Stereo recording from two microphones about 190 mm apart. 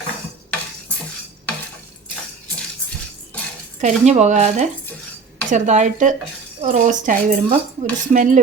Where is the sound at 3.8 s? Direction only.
40° right (ahead or behind).